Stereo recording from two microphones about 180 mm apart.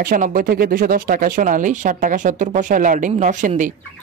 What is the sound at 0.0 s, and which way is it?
Speech, 50° right (ahead or behind).